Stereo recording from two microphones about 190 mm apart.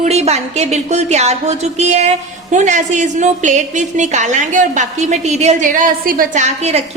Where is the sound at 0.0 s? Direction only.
35° right (ahead or behind).